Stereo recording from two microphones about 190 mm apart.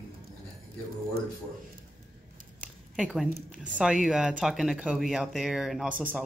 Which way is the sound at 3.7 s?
5° right (ahead or behind).